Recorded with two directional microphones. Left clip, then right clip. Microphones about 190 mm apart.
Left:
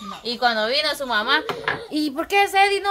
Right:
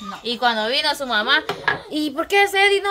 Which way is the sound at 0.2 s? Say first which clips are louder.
Right 1 dB; 5° right (ahead or behind).